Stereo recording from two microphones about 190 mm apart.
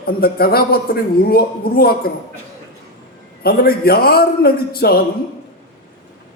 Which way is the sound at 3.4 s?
55° left (ahead or behind).